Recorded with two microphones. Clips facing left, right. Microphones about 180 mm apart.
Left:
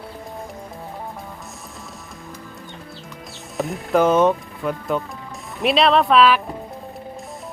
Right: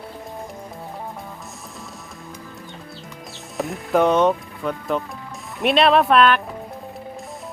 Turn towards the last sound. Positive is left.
turn(degrees=0)  # may be behind; listen again after turning